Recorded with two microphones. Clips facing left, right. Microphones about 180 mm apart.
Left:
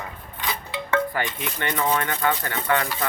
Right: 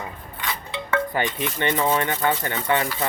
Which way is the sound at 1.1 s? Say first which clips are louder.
Right 3 dB; 20° right (ahead or behind).